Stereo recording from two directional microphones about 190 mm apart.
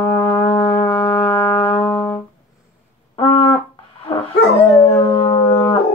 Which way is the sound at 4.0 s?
30° left (ahead or behind).